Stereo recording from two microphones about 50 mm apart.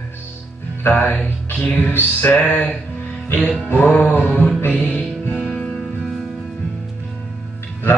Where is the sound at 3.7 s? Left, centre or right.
Left.